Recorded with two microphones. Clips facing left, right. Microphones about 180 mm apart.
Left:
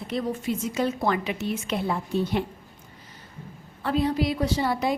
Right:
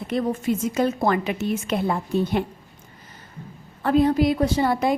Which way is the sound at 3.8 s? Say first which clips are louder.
Right 6 dB; 50° right (ahead or behind).